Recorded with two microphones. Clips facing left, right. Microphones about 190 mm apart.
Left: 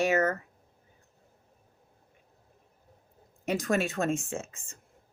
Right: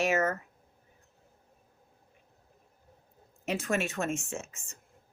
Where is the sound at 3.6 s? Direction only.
35° left (ahead or behind).